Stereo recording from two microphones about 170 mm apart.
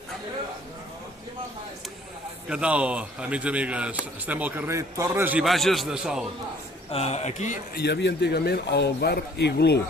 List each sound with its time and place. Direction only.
2.5 s a man's voice: 5° right (ahead or behind)
6.9 s speech: 40° left (ahead or behind)
7.8 s speech: 80° left